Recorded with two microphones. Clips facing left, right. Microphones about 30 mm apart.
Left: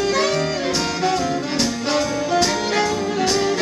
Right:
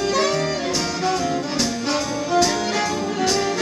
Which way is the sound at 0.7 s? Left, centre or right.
Left.